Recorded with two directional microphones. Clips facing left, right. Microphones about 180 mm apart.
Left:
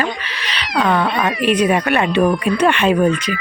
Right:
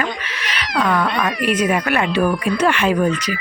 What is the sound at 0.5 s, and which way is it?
Speech, 25° left (ahead or behind).